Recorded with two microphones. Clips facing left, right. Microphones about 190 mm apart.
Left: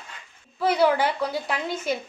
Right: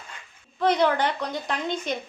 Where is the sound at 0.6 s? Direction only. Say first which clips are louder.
Left 1 dB; 5° left (ahead or behind).